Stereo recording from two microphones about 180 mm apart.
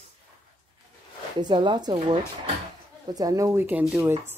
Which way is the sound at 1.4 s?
25° right (ahead or behind).